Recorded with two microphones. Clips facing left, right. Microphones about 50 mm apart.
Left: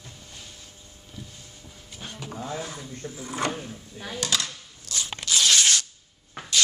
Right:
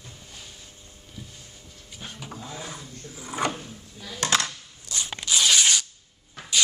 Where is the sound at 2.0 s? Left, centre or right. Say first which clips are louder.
Left 1 dB; centre.